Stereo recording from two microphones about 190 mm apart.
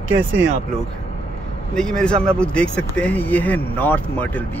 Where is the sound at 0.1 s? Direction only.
85° right.